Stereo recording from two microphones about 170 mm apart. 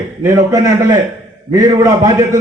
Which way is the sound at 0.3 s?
20° right (ahead or behind).